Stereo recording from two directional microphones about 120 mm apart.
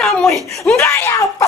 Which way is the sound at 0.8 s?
20° left (ahead or behind).